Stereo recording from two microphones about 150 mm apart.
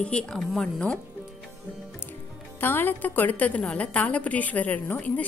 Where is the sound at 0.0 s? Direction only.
5° left (ahead or behind).